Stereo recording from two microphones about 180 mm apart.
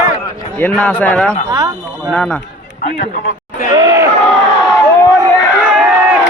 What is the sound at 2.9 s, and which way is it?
Speech, 45° left (ahead or behind).